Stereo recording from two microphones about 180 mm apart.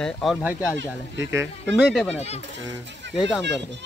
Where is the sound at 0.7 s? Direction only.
85° right.